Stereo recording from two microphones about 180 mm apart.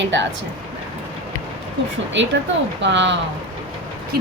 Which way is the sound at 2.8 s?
85° right.